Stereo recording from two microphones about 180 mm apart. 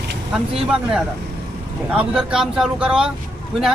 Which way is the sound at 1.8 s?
5° right (ahead or behind).